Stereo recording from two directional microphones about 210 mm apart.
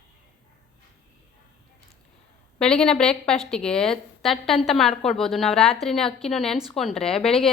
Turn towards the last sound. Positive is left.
turn(degrees=25)  # may be behind; listen again after turning